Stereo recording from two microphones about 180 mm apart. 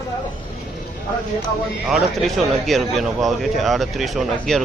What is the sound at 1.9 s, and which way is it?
Speech, centre (ahead or behind).